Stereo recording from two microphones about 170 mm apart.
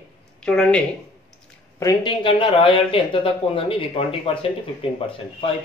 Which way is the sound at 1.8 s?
25° left (ahead or behind).